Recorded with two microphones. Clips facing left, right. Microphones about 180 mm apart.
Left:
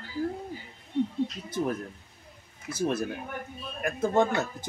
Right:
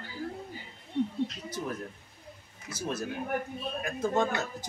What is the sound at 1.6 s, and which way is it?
Speech, 55° left (ahead or behind).